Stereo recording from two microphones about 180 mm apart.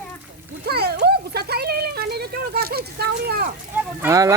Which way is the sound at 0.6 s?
60° right (ahead or behind).